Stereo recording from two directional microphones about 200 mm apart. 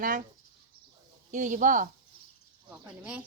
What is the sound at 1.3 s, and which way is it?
Speech, 40° right (ahead or behind).